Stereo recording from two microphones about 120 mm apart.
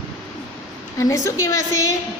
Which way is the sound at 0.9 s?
25° left (ahead or behind).